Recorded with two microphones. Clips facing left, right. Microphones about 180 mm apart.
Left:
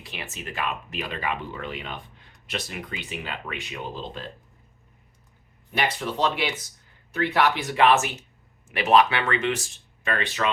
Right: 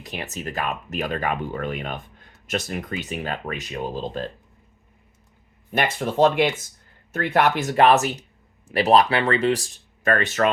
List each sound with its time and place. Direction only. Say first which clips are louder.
0.0 s speech: right 6 dB; 40° right (ahead or behind)
5.7 s speech: right 4 dB; 45° right (ahead or behind)